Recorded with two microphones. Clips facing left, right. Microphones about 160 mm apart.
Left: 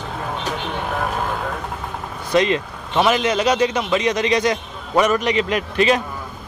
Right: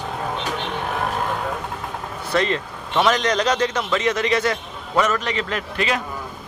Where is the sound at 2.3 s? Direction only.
15° left (ahead or behind).